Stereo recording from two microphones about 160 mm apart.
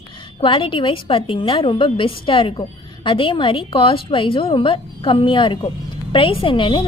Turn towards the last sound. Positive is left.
turn(degrees=30)  # may be behind; listen again after turning